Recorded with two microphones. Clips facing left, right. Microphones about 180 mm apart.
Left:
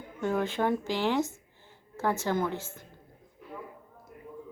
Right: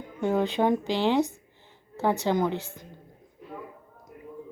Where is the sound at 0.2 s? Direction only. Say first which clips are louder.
Right 4 dB; 20° right (ahead or behind).